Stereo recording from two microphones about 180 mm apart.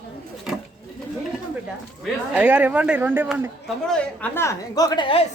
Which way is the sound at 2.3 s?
10° right (ahead or behind).